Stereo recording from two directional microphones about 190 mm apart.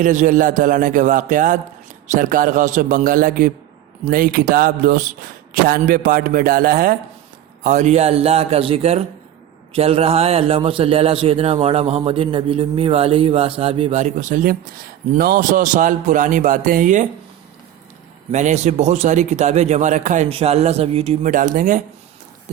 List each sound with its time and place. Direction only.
0.0 s a man's voice: 40° right (ahead or behind)
7.6 s a man's voice: 40° right (ahead or behind)
18.3 s a man's voice: 40° right (ahead or behind)